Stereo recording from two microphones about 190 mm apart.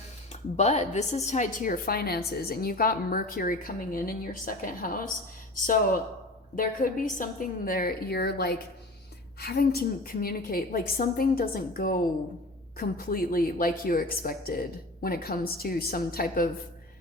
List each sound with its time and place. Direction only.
0.5 s a woman's voice: 35° left (ahead or behind)
6.6 s a woman's voice: 45° left (ahead or behind)